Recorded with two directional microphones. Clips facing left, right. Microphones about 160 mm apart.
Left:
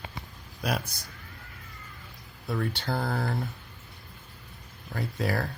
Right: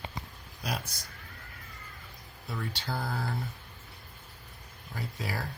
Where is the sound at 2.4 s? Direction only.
55° left (ahead or behind).